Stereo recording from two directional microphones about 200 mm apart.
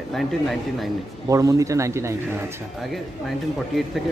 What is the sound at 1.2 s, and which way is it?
Speech, 15° right (ahead or behind).